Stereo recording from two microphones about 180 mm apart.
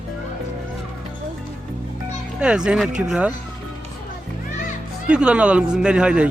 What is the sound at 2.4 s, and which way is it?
Speech, 5° right (ahead or behind).